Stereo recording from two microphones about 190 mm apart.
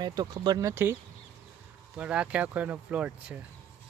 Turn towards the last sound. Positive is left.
turn(degrees=-5)  # may be behind; listen again after turning